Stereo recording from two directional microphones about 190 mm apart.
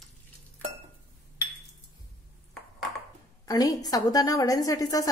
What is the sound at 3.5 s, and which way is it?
A woman's voice, 20° left (ahead or behind).